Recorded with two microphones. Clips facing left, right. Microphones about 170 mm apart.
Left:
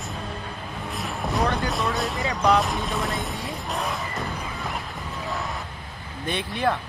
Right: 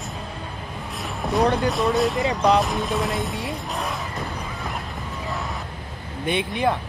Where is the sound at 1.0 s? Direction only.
Centre (ahead or behind).